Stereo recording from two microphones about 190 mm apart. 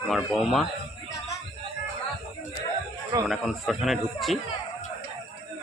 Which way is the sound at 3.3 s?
Centre (ahead or behind).